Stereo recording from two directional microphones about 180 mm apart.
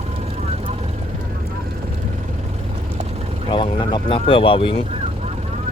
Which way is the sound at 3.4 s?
30° left (ahead or behind).